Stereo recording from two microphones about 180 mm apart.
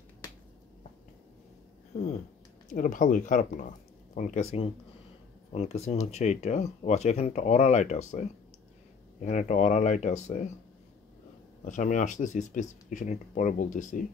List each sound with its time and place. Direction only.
2.7 s speech: 45° left (ahead or behind)
11.6 s speech: 45° left (ahead or behind)